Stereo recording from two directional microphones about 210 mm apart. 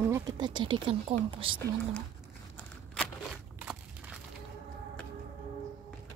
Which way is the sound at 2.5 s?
Centre (ahead or behind).